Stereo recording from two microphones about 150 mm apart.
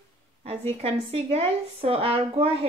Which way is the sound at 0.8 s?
40° right (ahead or behind).